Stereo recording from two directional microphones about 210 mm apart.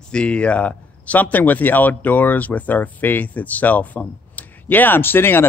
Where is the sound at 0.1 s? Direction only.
5° left (ahead or behind).